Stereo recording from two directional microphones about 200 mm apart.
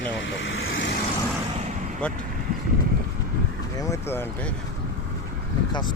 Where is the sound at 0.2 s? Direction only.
70° left (ahead or behind).